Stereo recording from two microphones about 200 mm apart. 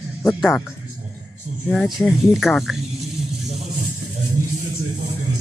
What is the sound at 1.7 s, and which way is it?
Speech, centre (ahead or behind).